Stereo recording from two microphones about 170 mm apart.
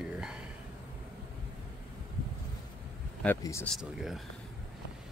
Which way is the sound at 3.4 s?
15° left (ahead or behind).